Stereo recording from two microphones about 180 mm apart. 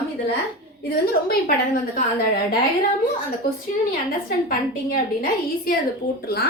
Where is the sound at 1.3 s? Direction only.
55° left (ahead or behind).